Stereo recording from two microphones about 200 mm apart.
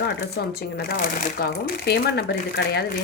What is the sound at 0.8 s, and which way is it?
A woman's voice, 45° left (ahead or behind).